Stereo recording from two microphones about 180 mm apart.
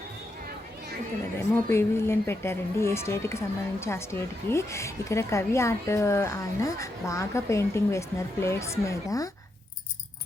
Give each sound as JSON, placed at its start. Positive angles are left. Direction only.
{"t": 1.7, "sound": "speech", "side_deg": 15}